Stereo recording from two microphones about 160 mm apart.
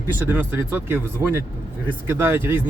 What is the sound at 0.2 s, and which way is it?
Speech, 10° right (ahead or behind).